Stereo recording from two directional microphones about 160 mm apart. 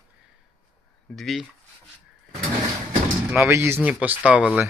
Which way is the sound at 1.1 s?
Centre (ahead or behind).